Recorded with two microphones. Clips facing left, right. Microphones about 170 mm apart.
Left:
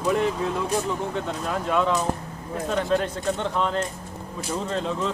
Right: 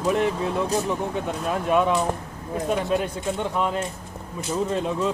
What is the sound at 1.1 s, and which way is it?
Speech, 15° right (ahead or behind).